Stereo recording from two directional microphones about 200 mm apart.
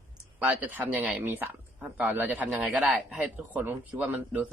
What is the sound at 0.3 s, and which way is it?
Speech, 10° right (ahead or behind).